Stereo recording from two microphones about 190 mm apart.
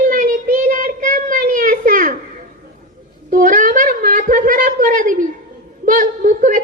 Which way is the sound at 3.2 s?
45° right (ahead or behind).